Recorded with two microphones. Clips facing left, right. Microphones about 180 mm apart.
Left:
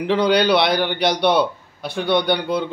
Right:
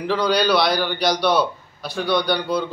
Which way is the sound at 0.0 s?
25° left (ahead or behind).